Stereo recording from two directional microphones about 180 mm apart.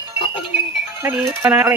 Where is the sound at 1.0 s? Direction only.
10° right (ahead or behind).